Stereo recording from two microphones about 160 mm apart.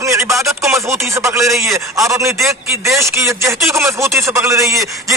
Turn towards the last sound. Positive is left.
turn(degrees=-20)  # may be behind; listen again after turning